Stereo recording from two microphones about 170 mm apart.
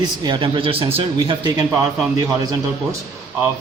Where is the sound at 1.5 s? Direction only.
20° right (ahead or behind).